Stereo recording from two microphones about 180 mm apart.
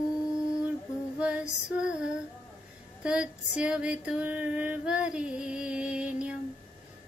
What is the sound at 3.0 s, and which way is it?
Female singing, 5° right (ahead or behind).